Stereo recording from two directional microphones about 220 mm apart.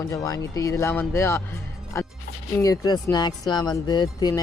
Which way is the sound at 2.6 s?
15° left (ahead or behind).